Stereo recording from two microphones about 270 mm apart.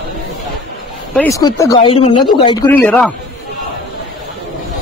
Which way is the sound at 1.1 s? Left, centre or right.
Centre.